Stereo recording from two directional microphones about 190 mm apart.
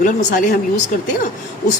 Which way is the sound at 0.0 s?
40° left (ahead or behind).